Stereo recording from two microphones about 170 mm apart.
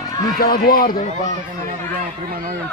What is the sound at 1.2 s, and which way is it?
Speech, 50° right (ahead or behind).